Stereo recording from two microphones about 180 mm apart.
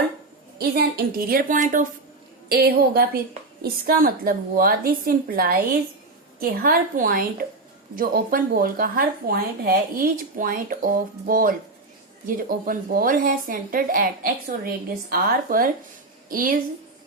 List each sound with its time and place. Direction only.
0.6 s speech: 60° right (ahead or behind)
2.5 s a woman's voice: 60° right (ahead or behind)